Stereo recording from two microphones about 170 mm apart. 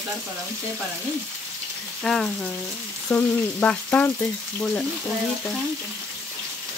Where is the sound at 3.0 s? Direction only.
10° left (ahead or behind).